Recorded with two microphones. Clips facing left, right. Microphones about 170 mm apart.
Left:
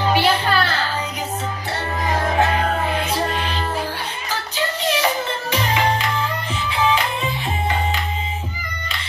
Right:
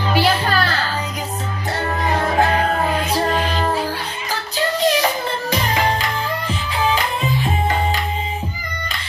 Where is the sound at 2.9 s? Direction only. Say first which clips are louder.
Right 3 dB; 35° right (ahead or behind).